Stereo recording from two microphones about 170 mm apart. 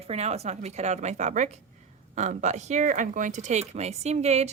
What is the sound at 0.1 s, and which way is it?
A woman's voice, 40° right (ahead or behind).